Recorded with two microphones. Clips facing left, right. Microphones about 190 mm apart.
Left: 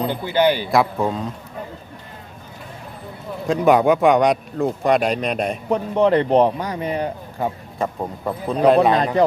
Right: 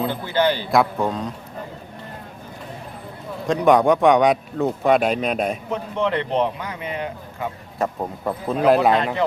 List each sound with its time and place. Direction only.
0.1 s a man's voice: 15° left (ahead or behind)
0.7 s a man's voice: centre (ahead or behind)
3.4 s a man's voice: centre (ahead or behind)
5.6 s speech: 40° left (ahead or behind)
7.8 s a man's voice: centre (ahead or behind)